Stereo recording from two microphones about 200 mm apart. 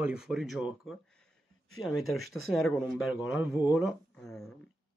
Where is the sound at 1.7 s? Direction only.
90° left.